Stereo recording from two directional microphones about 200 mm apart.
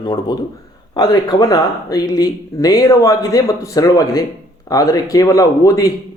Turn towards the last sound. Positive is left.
turn(degrees=15)  # may be behind; listen again after turning